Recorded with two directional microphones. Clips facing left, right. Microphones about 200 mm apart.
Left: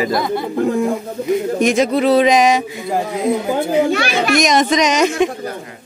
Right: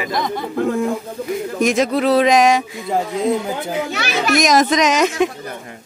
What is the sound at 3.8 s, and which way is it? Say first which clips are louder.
Speech: left 8 dB; 55° left (ahead or behind).